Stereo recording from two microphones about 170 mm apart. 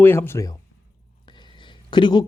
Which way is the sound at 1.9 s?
25° left (ahead or behind).